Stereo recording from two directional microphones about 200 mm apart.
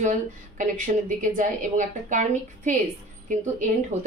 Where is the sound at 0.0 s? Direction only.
40° right (ahead or behind).